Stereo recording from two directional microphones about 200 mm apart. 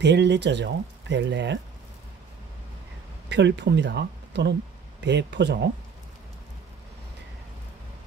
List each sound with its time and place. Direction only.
0.0 s speech: 60° right (ahead or behind)
3.3 s speech: 60° right (ahead or behind)